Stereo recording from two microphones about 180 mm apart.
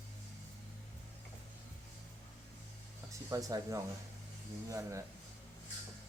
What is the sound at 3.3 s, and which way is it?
Speech, 20° right (ahead or behind).